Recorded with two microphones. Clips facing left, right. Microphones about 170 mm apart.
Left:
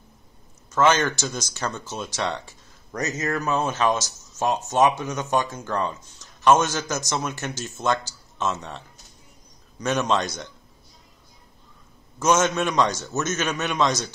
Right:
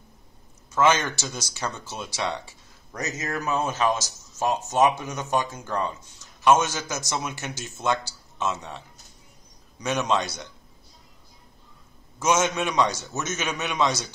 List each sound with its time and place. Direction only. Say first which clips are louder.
0.7 s speech: left 2 dB; 10° right (ahead or behind)
12.2 s speech: left 2 dB; 10° right (ahead or behind)